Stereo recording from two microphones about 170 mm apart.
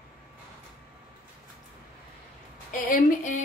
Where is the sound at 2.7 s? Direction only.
50° left (ahead or behind).